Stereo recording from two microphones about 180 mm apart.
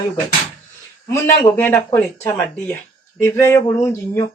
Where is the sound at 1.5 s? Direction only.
10° left (ahead or behind).